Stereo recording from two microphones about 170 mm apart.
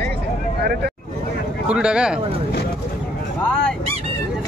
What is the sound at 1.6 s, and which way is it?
Speech, 5° right (ahead or behind).